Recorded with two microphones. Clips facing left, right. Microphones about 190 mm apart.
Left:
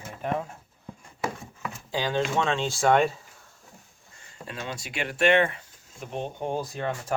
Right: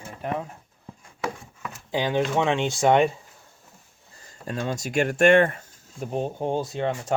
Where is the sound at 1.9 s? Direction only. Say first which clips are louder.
Right 3 dB; 20° right (ahead or behind).